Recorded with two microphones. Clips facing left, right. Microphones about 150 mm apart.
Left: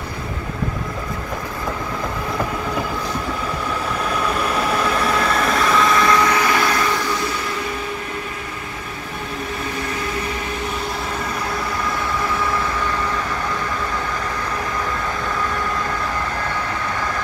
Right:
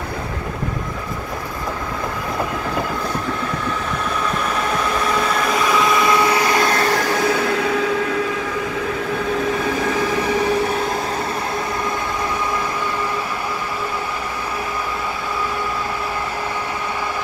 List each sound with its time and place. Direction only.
4.3 s vehicle: 5° left (ahead or behind)
6.2 s train: 25° right (ahead or behind)
6.7 s train: 40° right (ahead or behind)
7.0 s train: 70° right (ahead or behind); by 8.2 s 90° right